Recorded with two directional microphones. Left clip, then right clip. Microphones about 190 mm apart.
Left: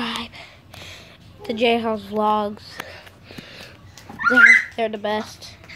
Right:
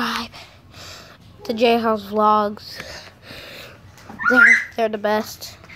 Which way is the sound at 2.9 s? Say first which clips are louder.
Right 3 dB; 30° right (ahead or behind).